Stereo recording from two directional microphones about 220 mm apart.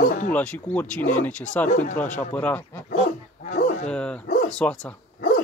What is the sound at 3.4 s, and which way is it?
Bow-wow, 35° left (ahead or behind).